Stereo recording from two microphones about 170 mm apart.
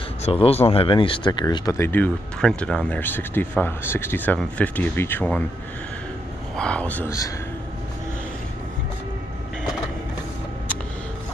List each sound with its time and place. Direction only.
0.2 s speech: 35° left (ahead or behind); by 5.4 s 10° left (ahead or behind)
6.5 s speech: 5° left (ahead or behind)